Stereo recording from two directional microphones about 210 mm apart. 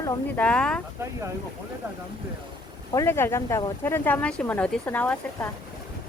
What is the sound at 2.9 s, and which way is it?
Speech, 15° left (ahead or behind).